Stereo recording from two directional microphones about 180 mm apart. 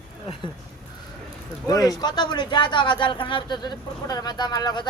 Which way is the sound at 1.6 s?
20° left (ahead or behind).